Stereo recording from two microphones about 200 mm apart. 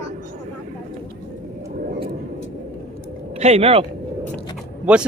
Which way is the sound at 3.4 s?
30° right (ahead or behind).